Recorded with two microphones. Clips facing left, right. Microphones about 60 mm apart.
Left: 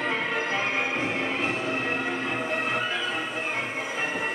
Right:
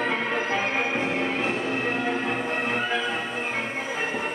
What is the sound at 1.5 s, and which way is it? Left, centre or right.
Music, centre.